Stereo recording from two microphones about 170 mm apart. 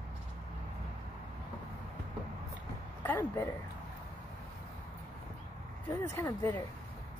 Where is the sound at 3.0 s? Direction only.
10° left (ahead or behind).